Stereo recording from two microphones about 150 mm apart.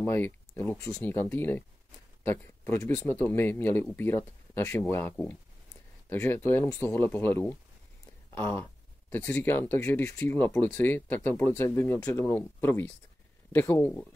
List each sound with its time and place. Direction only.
0.0 s speech: 15° left (ahead or behind)